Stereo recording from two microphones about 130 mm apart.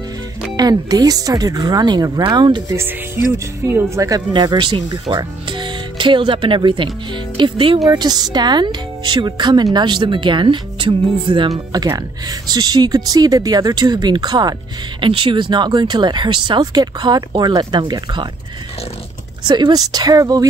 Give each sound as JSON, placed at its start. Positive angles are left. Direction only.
{"t": 0.6, "sound": "speech", "side_deg": -30}
{"t": 2.7, "sound": "speech", "side_deg": -20}
{"t": 4.3, "sound": "speech", "side_deg": -35}
{"t": 19.4, "sound": "speech", "side_deg": -35}